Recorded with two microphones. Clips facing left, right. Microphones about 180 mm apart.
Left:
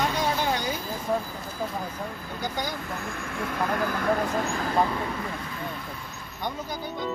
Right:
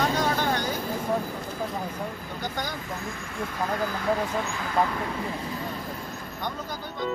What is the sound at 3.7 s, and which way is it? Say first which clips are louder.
Speech: left 1 dB; 55° left (ahead or behind).